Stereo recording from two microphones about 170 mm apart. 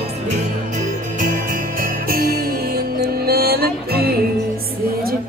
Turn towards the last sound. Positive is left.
turn(degrees=-65)  # may be behind; listen again after turning